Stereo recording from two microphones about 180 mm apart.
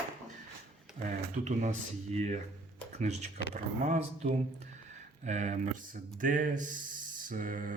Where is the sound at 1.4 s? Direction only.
40° right (ahead or behind).